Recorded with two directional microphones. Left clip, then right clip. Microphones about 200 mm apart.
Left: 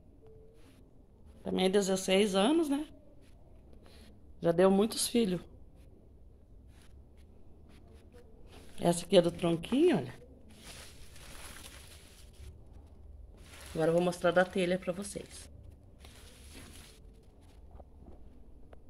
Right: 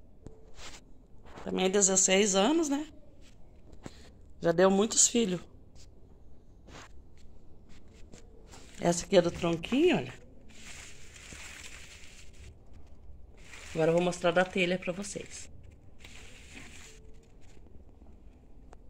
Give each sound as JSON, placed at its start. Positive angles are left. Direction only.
{"t": 1.4, "sound": "a woman's voice", "side_deg": 5}
{"t": 9.0, "sound": "a woman's voice", "side_deg": 0}
{"t": 13.7, "sound": "speech", "side_deg": -20}